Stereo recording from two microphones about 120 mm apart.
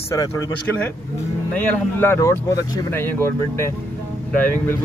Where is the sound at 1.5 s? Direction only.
15° left (ahead or behind).